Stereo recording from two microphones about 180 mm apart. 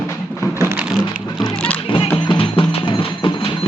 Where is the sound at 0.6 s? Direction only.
10° right (ahead or behind).